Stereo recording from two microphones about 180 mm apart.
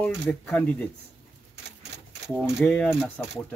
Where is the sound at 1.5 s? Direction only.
70° right (ahead or behind).